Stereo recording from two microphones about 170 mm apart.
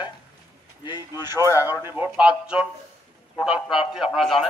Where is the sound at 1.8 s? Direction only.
10° right (ahead or behind).